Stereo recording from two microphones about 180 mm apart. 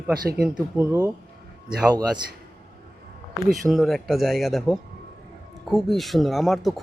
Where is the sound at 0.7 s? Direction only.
20° right (ahead or behind).